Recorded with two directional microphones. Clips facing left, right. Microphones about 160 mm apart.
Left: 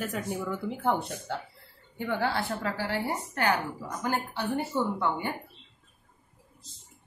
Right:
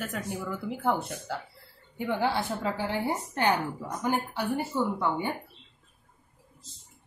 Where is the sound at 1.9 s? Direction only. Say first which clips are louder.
Right 1 dB; 15° right (ahead or behind).